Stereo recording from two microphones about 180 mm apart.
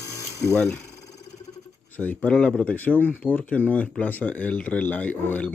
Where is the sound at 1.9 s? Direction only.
10° left (ahead or behind).